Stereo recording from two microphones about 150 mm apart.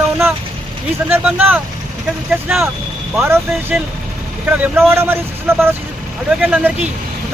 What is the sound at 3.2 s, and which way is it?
Speech, 15° right (ahead or behind).